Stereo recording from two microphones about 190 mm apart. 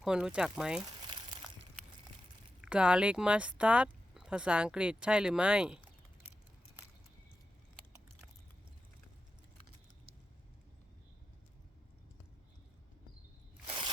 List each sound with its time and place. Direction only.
0.0 s speech: 5° right (ahead or behind)
1.0 s crumpling: 25° right (ahead or behind)
2.6 s speech: 5° right (ahead or behind)
13.7 s scissors: 25° right (ahead or behind)